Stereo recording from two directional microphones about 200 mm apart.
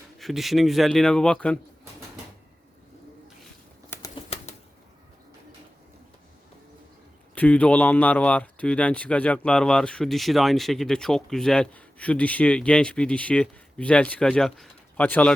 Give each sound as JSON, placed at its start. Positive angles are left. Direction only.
{"t": 0.2, "sound": "speech", "side_deg": 0}
{"t": 3.8, "sound": "bird flight", "side_deg": 10}
{"t": 4.1, "sound": "bird flight", "side_deg": 30}
{"t": 7.3, "sound": "speech", "side_deg": 10}